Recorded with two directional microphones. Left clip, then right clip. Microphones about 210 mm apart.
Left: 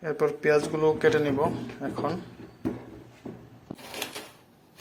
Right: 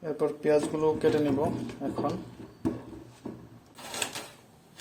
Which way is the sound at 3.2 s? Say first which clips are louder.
Even; 25° right (ahead or behind).